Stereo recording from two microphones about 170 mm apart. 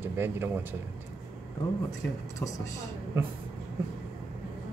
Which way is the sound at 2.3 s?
20° left (ahead or behind).